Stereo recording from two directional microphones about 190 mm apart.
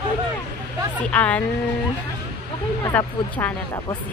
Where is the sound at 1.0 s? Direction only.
5° left (ahead or behind).